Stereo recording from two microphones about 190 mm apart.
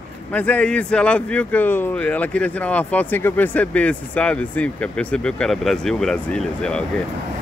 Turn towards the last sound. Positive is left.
turn(degrees=5)  # may be behind; listen again after turning